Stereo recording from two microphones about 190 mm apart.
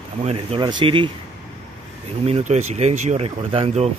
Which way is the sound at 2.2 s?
35° right (ahead or behind).